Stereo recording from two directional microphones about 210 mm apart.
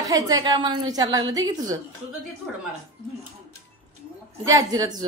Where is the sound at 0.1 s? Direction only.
20° right (ahead or behind).